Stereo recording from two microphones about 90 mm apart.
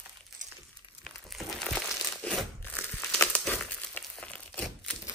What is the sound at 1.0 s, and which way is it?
Crumpling, 5° left (ahead or behind).